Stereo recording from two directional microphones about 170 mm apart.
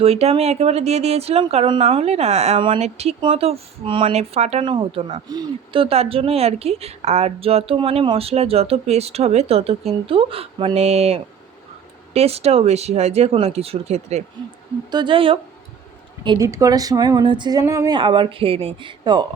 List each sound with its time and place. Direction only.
0.0 s speech: 35° right (ahead or behind)
4.6 s speech: 30° right (ahead or behind)
14.8 s speech: 25° right (ahead or behind)